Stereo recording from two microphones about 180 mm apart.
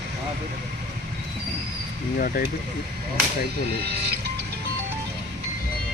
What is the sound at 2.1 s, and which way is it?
Speech, 55° left (ahead or behind).